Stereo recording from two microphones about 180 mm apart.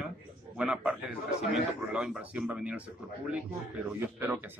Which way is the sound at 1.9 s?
5° right (ahead or behind).